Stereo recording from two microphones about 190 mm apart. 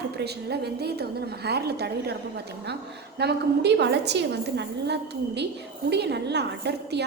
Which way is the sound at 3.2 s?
60° right (ahead or behind).